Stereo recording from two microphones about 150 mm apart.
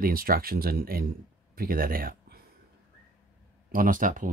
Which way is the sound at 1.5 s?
75° right (ahead or behind).